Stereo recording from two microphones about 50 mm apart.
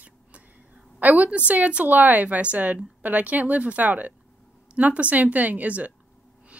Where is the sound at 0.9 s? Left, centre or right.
Right.